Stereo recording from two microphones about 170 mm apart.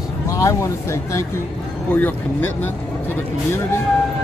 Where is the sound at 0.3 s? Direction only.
20° left (ahead or behind).